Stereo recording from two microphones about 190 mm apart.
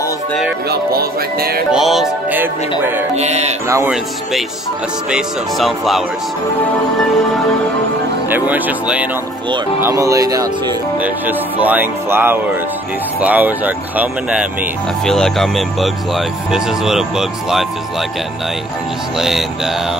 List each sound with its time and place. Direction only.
0.7 s music: 55° right (ahead or behind)
1.7 s speech: centre (ahead or behind)
3.2 s music: 35° right (ahead or behind)
3.6 s music: 15° right (ahead or behind)
5.1 s speech: centre (ahead or behind)
8.3 s music: 10° right (ahead or behind)
11.0 s music: 10° right (ahead or behind)
15.0 s speech: centre (ahead or behind)
19.1 s speech: centre (ahead or behind)